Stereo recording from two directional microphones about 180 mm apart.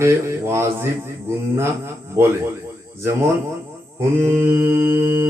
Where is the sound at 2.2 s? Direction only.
15° right (ahead or behind).